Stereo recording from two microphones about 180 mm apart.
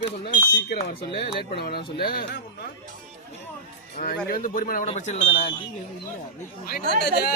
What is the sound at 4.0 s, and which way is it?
Speech, 45° left (ahead or behind).